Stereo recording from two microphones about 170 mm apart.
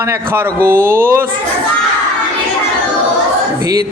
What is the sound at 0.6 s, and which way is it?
Speech, 55° right (ahead or behind).